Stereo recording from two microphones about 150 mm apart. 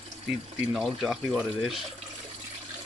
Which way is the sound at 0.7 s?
Centre (ahead or behind).